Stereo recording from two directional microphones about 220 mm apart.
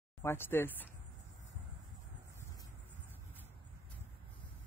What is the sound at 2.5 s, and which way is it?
Vehicle, 10° left (ahead or behind).